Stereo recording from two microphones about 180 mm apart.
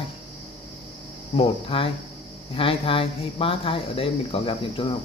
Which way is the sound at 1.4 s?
30° left (ahead or behind).